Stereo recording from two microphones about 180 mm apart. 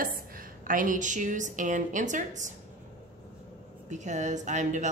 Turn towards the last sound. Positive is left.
turn(degrees=-45)  # may be behind; listen again after turning